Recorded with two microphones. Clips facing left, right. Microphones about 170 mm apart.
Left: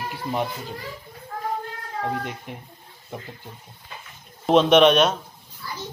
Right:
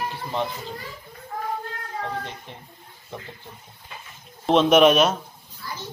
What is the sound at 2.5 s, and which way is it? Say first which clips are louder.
Speech: left 4 dB; 10° left (ahead or behind).